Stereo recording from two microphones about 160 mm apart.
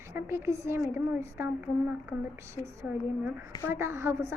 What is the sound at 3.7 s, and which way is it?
Speech, 15° right (ahead or behind).